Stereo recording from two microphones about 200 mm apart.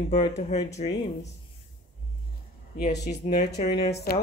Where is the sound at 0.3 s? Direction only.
35° left (ahead or behind).